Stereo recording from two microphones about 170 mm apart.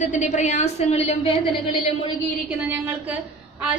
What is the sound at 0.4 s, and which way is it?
A woman's voice, 45° left (ahead or behind).